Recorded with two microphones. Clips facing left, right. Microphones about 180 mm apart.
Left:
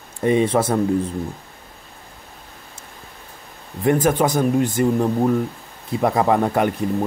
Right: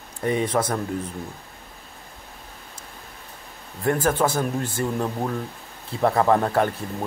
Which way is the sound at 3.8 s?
20° left (ahead or behind).